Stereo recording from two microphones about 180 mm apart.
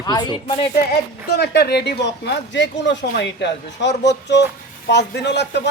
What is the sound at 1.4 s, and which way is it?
Speech, 60° left (ahead or behind).